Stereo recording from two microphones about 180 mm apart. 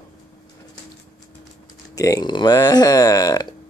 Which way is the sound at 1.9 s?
20° left (ahead or behind).